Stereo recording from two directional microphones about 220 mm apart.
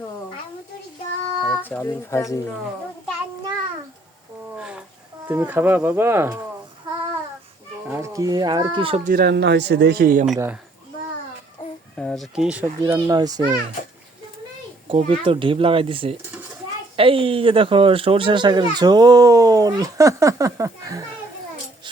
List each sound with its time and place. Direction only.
1.5 s speech: 10° left (ahead or behind)
4.5 s a sound: 5° right (ahead or behind)
5.3 s a child's voice: 10° right (ahead or behind)
7.9 s a child's voice: 10° right (ahead or behind)
9.0 s speech: 45° right (ahead or behind)
10.3 s a child's voice: 10° right (ahead or behind)
11.9 s a child's voice: centre (ahead or behind); by 13.6 s 15° right (ahead or behind)
14.8 s speech: 25° right (ahead or behind)